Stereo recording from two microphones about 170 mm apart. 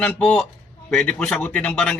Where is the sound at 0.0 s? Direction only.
5° left (ahead or behind).